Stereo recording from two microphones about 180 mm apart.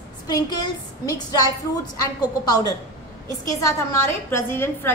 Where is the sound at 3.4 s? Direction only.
15° left (ahead or behind).